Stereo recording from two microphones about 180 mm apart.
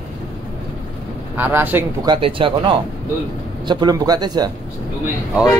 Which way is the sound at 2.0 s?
30° right (ahead or behind).